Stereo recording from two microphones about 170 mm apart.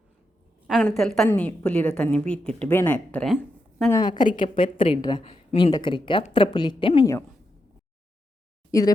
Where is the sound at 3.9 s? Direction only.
25° left (ahead or behind).